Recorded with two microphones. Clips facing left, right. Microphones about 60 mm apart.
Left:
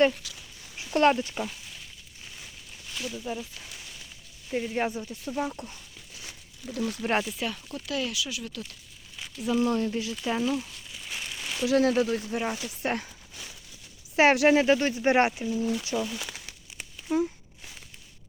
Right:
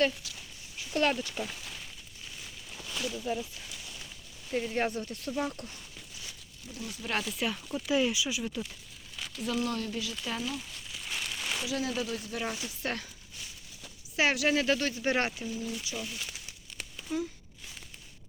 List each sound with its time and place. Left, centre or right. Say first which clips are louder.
0.9 s speech: left 7 dB; left
3.3 s speech: right 1 dB; centre
4.5 s speech: left 2 dB; centre
6.7 s speech: left 10 dB; left
7.3 s speech: even; centre
9.4 s speech: left 6 dB; centre
9.6 s speech: left 7 dB; left
10.9 s a sound: even; centre
11.6 s speech: left 12 dB; left
12.3 s speech: left 5 dB; left
14.2 s speech: left 7 dB; left
15.7 s speech: left 9 dB; left
16.0 s speech: left 8 dB; left
17.1 s speech: left 7 dB; left